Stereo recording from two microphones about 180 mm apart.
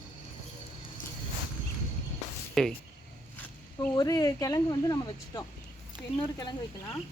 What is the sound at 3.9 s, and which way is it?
Speech, 20° left (ahead or behind).